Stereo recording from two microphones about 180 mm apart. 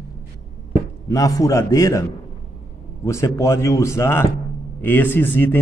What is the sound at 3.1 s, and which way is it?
A man's voice, 15° left (ahead or behind).